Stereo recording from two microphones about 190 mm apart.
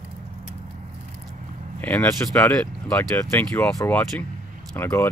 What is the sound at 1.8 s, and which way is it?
Speech, 10° left (ahead or behind).